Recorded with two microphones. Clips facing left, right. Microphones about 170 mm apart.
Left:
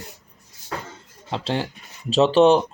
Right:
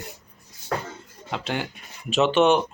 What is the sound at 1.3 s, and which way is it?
Speech, 30° left (ahead or behind).